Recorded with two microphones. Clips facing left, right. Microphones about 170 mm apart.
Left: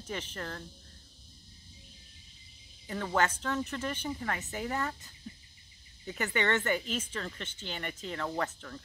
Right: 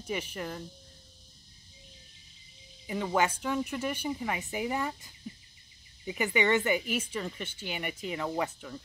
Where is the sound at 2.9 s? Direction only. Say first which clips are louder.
Right 2 dB; 10° right (ahead or behind).